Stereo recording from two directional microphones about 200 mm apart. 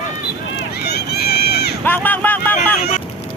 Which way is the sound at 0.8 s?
55° left (ahead or behind).